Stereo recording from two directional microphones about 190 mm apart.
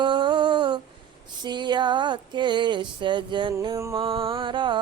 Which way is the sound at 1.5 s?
25° right (ahead or behind).